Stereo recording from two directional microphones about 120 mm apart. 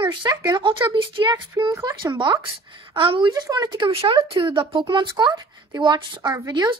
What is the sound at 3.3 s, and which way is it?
Speech, 30° right (ahead or behind).